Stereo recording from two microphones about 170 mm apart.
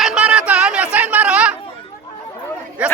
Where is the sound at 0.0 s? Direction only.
5° right (ahead or behind).